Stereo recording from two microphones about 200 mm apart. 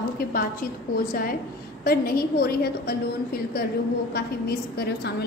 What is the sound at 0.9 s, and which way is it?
A woman's voice, 45° left (ahead or behind).